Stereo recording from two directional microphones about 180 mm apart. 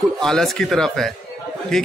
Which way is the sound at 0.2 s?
5° left (ahead or behind).